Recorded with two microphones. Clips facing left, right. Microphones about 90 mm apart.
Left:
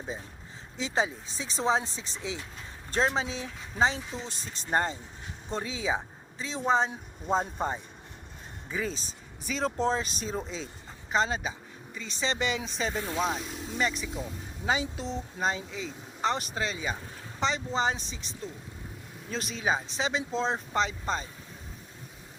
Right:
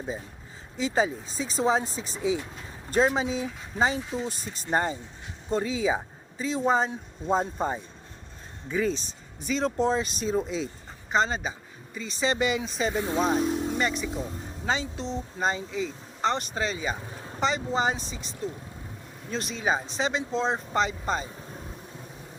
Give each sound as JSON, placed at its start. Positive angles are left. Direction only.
{"t": 0.8, "sound": "speech", "side_deg": 0}
{"t": 13.3, "sound": "vehicle", "side_deg": -45}
{"t": 13.7, "sound": "speech", "side_deg": 0}